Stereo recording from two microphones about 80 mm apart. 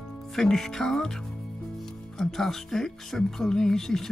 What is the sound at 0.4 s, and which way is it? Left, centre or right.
Speech, centre.